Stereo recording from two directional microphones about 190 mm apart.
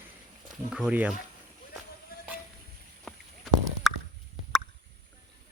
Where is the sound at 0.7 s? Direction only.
5° right (ahead or behind).